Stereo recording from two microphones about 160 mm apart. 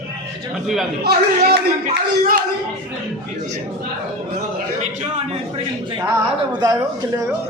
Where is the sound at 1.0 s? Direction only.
75° right (ahead or behind).